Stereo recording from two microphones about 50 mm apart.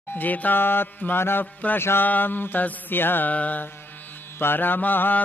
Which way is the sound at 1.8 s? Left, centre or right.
Left.